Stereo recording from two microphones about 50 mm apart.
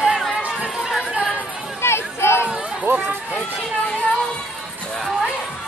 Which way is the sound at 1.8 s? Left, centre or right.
Left.